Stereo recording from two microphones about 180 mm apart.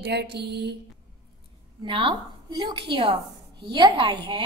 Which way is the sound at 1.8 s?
30° right (ahead or behind).